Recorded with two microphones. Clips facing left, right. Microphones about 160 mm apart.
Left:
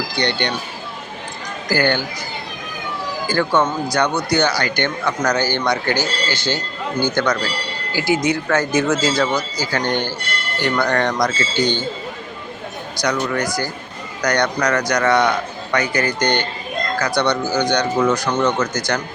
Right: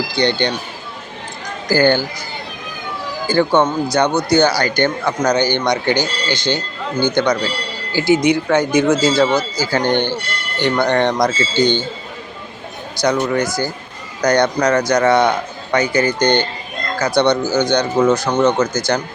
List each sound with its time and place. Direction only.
0.2 s speech: 30° right (ahead or behind)
1.7 s speech: 30° right (ahead or behind)
3.3 s speech: 25° right (ahead or behind)
5.2 s speech: 20° right (ahead or behind)
13.0 s speech: 25° right (ahead or behind)